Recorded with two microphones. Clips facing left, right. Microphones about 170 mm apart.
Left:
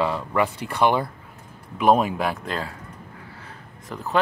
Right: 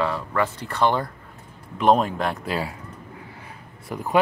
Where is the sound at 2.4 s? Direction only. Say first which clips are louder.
Right 2 dB; 10° right (ahead or behind).